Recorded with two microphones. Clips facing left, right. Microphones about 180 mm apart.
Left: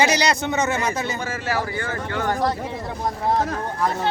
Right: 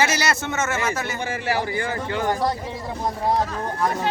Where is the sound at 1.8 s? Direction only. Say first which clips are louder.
Right 1 dB; 15° right (ahead or behind).